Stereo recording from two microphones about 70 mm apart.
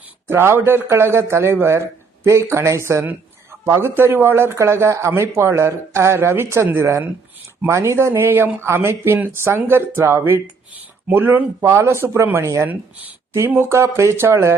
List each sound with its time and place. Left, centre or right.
0.3 s speech: right
12.6 s speech: right
13.5 s speech: right